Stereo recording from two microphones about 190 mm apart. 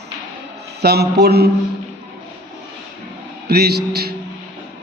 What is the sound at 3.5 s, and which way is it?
Speech, 55° right (ahead or behind).